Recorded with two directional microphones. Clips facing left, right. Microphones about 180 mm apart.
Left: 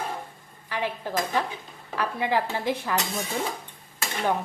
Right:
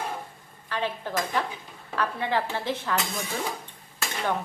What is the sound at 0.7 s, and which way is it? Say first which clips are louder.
A woman's voice: even; 15° left (ahead or behind).